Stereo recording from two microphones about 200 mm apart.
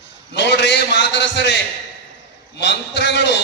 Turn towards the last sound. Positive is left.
turn(degrees=60)  # may be behind; listen again after turning